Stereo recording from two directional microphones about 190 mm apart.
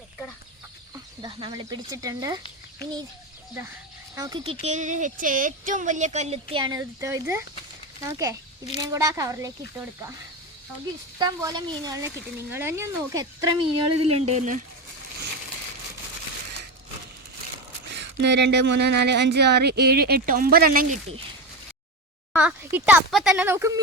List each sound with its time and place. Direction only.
1.2 s speech: 25° right (ahead or behind)
4.1 s speech: 20° right (ahead or behind)
4.6 s speech: 40° right (ahead or behind); by 9.5 s 15° right (ahead or behind)
11.2 s speech: 20° right (ahead or behind)
14.0 s speech: 30° right (ahead or behind)
18.2 s speech: 65° right (ahead or behind)
22.3 s speech: 10° right (ahead or behind)